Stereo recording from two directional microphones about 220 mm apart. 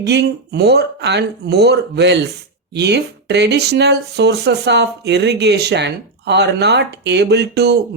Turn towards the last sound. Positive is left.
turn(degrees=-50)  # may be behind; listen again after turning